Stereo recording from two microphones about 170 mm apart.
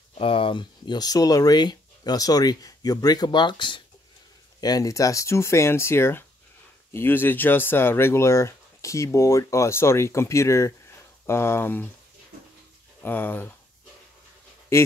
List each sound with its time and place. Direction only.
0.1 s speech: 30° left (ahead or behind); by 11.9 s 10° left (ahead or behind)
13.0 s speech: 10° left (ahead or behind)